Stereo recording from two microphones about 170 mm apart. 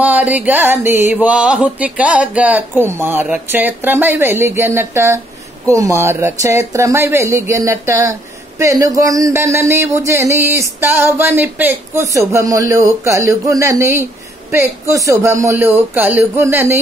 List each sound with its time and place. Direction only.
0.0 s speech: 10° right (ahead or behind)